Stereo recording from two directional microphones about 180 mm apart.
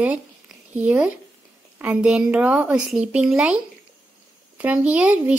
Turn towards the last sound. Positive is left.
turn(degrees=-5)  # may be behind; listen again after turning